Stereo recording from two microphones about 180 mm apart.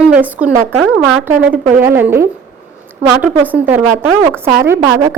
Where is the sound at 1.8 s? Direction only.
10° right (ahead or behind).